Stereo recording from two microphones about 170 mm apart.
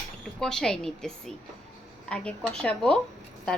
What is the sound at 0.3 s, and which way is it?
A woman's voice, 5° left (ahead or behind).